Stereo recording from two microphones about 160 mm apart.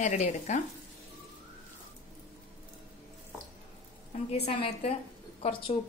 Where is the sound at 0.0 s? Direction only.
45° left (ahead or behind).